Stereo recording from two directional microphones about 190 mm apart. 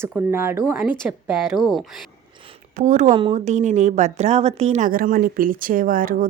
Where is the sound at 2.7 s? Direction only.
40° right (ahead or behind).